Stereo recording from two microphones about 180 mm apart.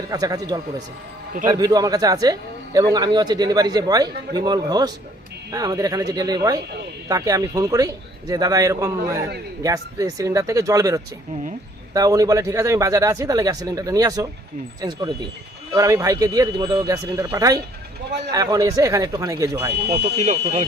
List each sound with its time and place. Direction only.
0.1 s a man's voice: 20° right (ahead or behind)
19.8 s speech: 65° right (ahead or behind)
20.1 s speech: 40° right (ahead or behind)